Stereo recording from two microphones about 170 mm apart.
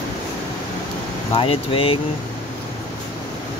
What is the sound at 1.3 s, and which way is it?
Speech, 30° left (ahead or behind).